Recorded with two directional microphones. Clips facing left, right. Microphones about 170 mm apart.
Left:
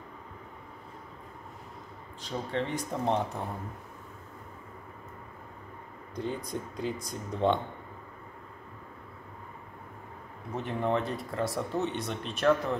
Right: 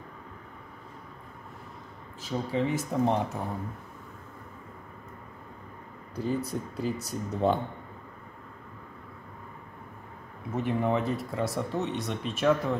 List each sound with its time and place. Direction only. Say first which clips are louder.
2.2 s speech: right 4 dB; 5° right (ahead or behind)
6.1 s speech: right 4 dB; 5° right (ahead or behind)
10.5 s speech: right 2 dB; 5° right (ahead or behind)